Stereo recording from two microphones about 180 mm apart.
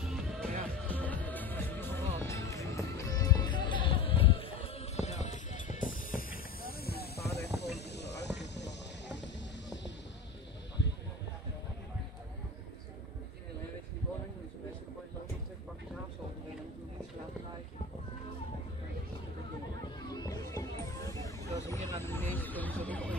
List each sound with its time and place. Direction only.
0.1 s music: 5° left (ahead or behind); by 7.2 s 60° left (ahead or behind)
7.3 s hiss: 70° left (ahead or behind)
7.9 s music: 70° left (ahead or behind)
20.0 s music: 20° left (ahead or behind)
21.1 s vehicle: 15° left (ahead or behind)